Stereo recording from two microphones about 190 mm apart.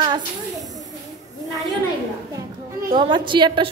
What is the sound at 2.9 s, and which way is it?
Speech, 25° right (ahead or behind).